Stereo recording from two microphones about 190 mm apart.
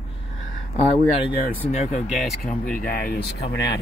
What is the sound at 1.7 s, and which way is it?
Speech, 40° left (ahead or behind).